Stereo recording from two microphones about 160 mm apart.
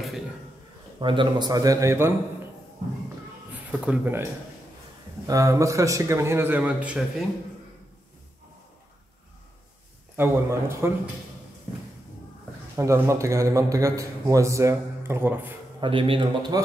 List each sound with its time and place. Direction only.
0.9 s a man's voice: 30° right (ahead or behind); by 2.1 s 15° right (ahead or behind)
3.8 s a man's voice: 10° right (ahead or behind)
10.1 s a man's voice: 15° right (ahead or behind)
12.7 s a man's voice: 15° right (ahead or behind)
15.8 s a man's voice: 35° right (ahead or behind)